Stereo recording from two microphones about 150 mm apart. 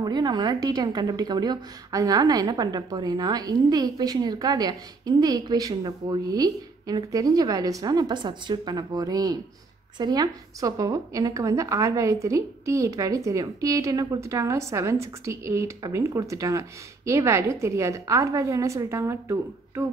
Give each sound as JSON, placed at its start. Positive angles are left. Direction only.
{"t": 0.0, "sound": "a woman's voice", "side_deg": -30}